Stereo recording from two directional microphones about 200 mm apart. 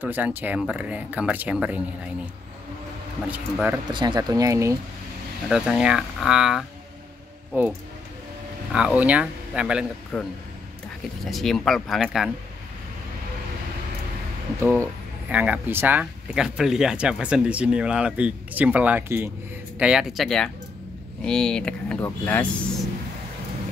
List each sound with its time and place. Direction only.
0.0 s speech: 10° right (ahead or behind)
3.3 s speech: 5° right (ahead or behind)
3.9 s speech: 20° right (ahead or behind)
5.5 s speech: 5° right (ahead or behind)
8.7 s speech: 5° right (ahead or behind)
11.2 s speech: centre (ahead or behind)
14.6 s speech: 10° right (ahead or behind); by 22.5 s 10° left (ahead or behind)